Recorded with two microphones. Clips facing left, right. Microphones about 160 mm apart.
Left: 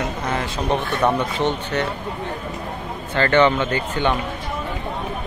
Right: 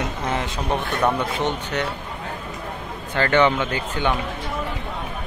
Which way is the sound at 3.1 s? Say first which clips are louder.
Left 2 dB; 10° right (ahead or behind).